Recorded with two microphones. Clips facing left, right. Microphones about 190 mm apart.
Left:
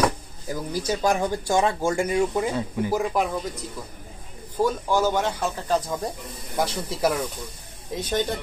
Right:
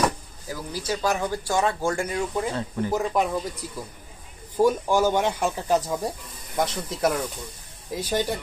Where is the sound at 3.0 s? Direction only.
Centre (ahead or behind).